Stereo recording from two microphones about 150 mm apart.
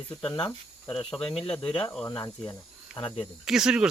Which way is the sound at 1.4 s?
40° left (ahead or behind).